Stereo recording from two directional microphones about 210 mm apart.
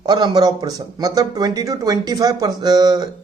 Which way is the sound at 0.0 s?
20° right (ahead or behind).